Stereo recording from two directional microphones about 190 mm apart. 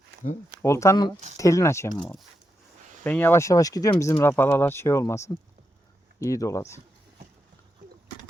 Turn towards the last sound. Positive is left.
turn(degrees=15)  # may be behind; listen again after turning